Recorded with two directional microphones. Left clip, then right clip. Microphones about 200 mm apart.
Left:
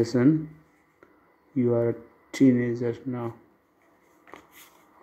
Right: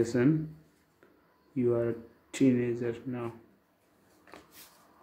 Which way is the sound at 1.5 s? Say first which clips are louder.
Left 5 dB; 15° left (ahead or behind).